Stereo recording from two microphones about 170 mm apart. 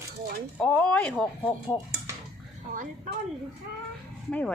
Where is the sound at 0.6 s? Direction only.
5° left (ahead or behind).